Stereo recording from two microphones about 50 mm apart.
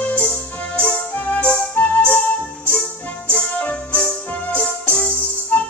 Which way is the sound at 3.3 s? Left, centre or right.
Left.